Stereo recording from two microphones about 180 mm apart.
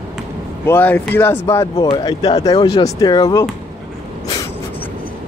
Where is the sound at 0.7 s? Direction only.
10° left (ahead or behind).